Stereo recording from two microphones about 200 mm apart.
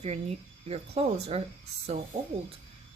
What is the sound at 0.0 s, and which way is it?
A woman's voice, 30° right (ahead or behind).